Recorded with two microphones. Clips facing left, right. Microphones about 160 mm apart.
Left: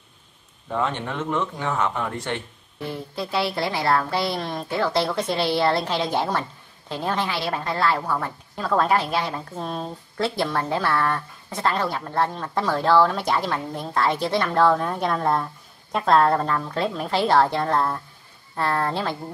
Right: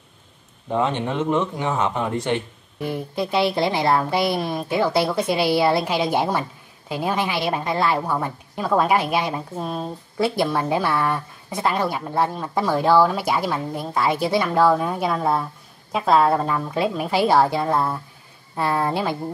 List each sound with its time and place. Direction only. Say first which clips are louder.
0.7 s a woman's voice: right 4 dB; 20° right (ahead or behind)